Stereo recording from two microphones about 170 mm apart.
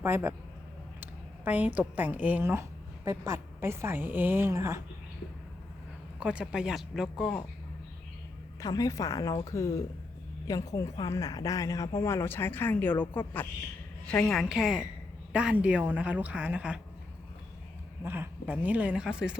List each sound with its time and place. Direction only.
0.0 s a woman's voice: 15° right (ahead or behind)
1.0 s a sound: 10° right (ahead or behind)
2.0 s a woman's voice: 10° right (ahead or behind)
6.1 s speech: 5° right (ahead or behind)
8.6 s a woman's voice: 20° left (ahead or behind); by 16.8 s 5° right (ahead or behind)
18.0 s a woman's voice: 10° right (ahead or behind)